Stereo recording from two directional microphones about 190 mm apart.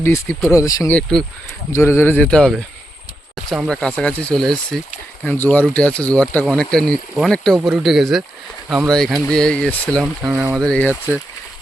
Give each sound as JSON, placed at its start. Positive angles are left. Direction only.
{"t": 0.0, "sound": "speech", "side_deg": 10}
{"t": 10.7, "sound": "speech", "side_deg": 10}